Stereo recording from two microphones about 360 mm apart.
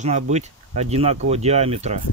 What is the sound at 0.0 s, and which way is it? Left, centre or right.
Speech, centre.